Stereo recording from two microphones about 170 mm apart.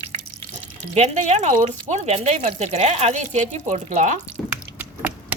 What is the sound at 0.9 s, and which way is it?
Speech, 40° right (ahead or behind).